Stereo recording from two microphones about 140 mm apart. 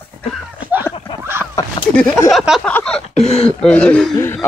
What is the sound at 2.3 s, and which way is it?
Speech, 5° right (ahead or behind).